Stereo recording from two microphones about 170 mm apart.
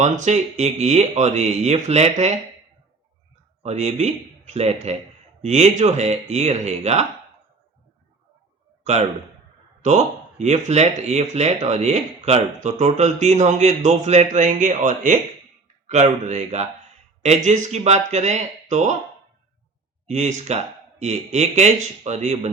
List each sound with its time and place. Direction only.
0.0 s speech: 40° right (ahead or behind)
3.6 s speech: 40° right (ahead or behind)
8.8 s a man's voice: 40° right (ahead or behind)
20.1 s speech: 45° right (ahead or behind)